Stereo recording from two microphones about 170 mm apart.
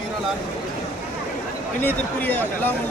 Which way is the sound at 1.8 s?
10° left (ahead or behind).